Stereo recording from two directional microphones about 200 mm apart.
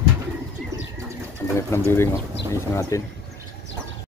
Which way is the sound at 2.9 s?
15° left (ahead or behind).